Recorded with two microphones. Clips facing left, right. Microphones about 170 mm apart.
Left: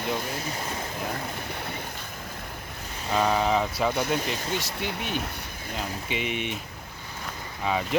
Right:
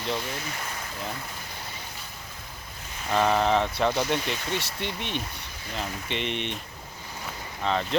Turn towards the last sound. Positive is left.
turn(degrees=10)  # may be behind; listen again after turning